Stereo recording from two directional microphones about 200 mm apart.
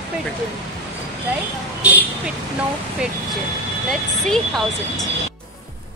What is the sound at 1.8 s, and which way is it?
Vehicle, 10° right (ahead or behind).